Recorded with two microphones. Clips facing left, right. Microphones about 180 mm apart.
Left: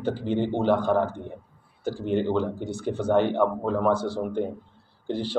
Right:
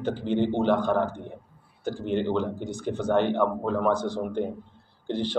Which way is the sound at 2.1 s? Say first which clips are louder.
Left 2 dB; 5° left (ahead or behind).